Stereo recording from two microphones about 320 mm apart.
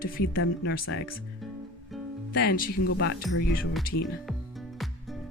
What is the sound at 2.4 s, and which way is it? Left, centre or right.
Speech, left.